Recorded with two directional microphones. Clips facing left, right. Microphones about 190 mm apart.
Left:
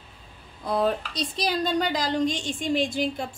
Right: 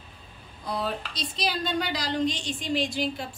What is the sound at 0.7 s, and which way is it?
Speech, 50° left (ahead or behind).